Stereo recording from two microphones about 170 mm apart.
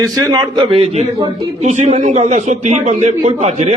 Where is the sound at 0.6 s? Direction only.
35° right (ahead or behind).